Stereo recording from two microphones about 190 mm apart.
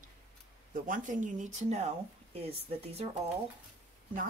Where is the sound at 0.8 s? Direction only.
45° right (ahead or behind).